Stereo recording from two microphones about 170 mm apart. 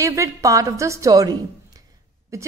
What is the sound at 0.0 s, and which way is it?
A woman's voice, 20° right (ahead or behind).